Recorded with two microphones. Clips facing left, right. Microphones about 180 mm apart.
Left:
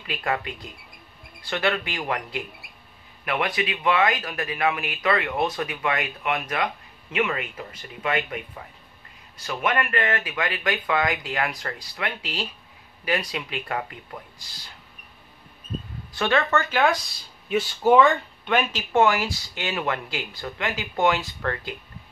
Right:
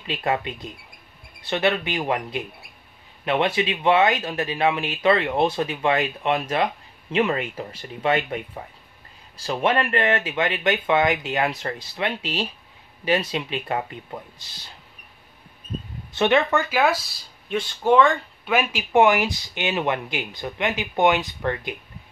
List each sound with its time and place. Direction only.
0.0 s speech: 25° right (ahead or behind)
9.4 s speech: 30° right (ahead or behind)
16.1 s speech: 20° right (ahead or behind)